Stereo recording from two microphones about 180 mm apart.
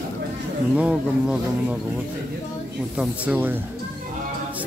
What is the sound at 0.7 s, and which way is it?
Speech, 5° right (ahead or behind).